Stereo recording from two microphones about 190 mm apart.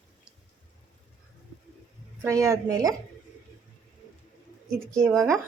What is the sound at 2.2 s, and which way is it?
Speech, 15° right (ahead or behind).